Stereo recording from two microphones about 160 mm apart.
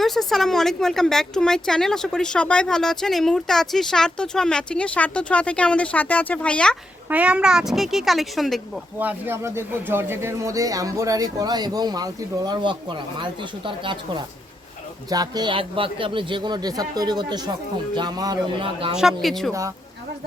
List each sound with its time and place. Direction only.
0.0 s speech: centre (ahead or behind)
7.1 s speech: 10° right (ahead or behind)
9.0 s speech: 10° right (ahead or behind); by 18.9 s 30° right (ahead or behind)
18.9 s speech: centre (ahead or behind)